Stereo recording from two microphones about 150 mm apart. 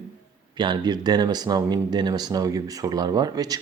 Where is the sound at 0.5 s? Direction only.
30° right (ahead or behind).